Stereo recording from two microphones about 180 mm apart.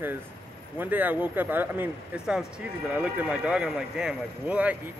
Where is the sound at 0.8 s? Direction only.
10° right (ahead or behind).